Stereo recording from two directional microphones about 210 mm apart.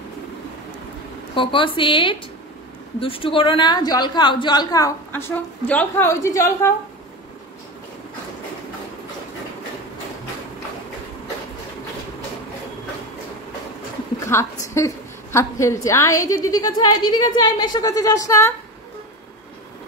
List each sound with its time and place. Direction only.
1.3 s a woman's voice: 25° left (ahead or behind)
14.2 s a sound: 15° left (ahead or behind)
15.3 s a woman's voice: 15° left (ahead or behind)